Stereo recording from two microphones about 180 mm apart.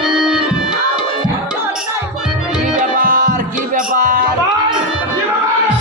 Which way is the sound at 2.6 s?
50° right (ahead or behind).